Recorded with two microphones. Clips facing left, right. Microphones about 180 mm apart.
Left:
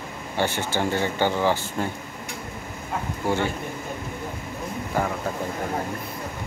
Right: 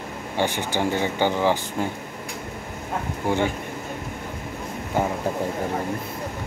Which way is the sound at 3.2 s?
15° right (ahead or behind).